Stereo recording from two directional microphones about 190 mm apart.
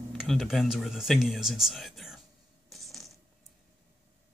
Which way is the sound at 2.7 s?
Centre (ahead or behind).